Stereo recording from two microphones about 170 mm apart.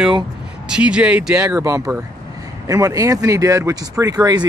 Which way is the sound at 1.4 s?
15° right (ahead or behind).